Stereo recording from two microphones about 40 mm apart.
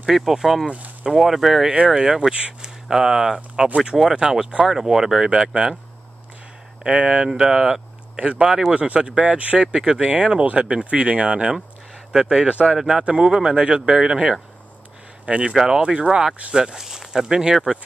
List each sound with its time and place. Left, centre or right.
0.1 s speech: centre
3.6 s speech: right
4.0 s speech: centre
6.8 s speech: right
7.3 s speech: centre
8.2 s speech: right
9.1 s speech: right
15.5 s speech: centre